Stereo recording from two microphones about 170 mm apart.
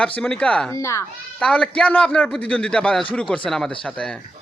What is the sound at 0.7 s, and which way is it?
Speech, 15° left (ahead or behind).